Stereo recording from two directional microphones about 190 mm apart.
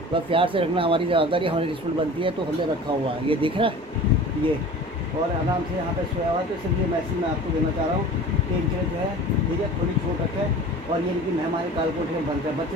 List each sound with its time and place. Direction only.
0.1 s speech: 30° right (ahead or behind)
3.3 s speech: 30° right (ahead or behind)